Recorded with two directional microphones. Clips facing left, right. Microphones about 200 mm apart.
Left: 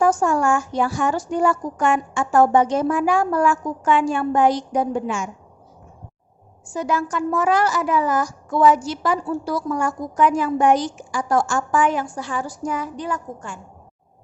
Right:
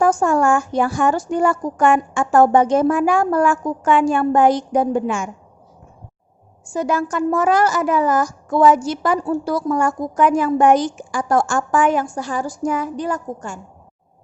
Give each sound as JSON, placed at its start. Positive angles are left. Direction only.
{"t": 0.0, "sound": "a woman's voice", "side_deg": -55}
{"t": 6.7, "sound": "a woman's voice", "side_deg": -45}